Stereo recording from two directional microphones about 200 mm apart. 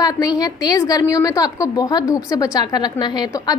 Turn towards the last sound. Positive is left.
turn(degrees=20)  # may be behind; listen again after turning